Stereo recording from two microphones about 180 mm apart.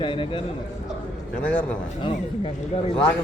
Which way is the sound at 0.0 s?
30° left (ahead or behind).